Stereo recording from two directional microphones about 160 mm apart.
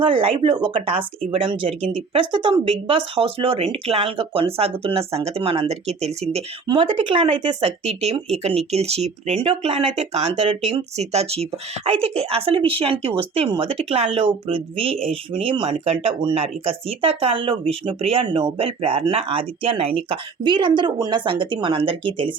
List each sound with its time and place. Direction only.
0.0 s speech: 35° right (ahead or behind)
6.7 s speech: 30° right (ahead or behind)